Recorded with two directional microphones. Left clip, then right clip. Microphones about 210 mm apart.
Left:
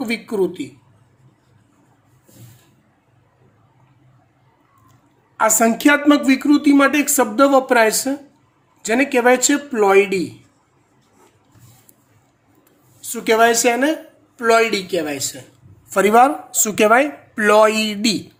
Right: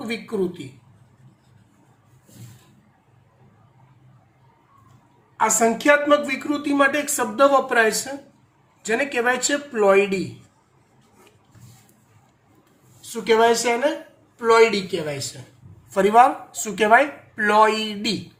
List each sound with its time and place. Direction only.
0.0 s speech: 55° left (ahead or behind)
5.4 s speech: 60° left (ahead or behind)
13.2 s speech: 55° left (ahead or behind)